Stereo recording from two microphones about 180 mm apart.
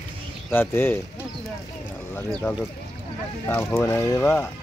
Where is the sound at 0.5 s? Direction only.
10° left (ahead or behind).